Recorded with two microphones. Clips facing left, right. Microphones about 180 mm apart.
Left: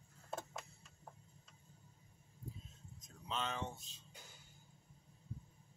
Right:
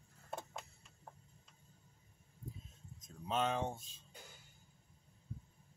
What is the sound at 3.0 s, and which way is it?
Speech, 50° right (ahead or behind).